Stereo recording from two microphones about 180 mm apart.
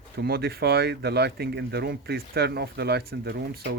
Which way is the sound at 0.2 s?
60° right (ahead or behind).